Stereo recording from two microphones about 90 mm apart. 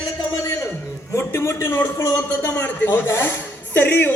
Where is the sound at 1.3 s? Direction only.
30° left (ahead or behind).